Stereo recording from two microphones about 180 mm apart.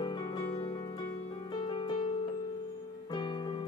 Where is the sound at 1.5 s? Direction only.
25° left (ahead or behind).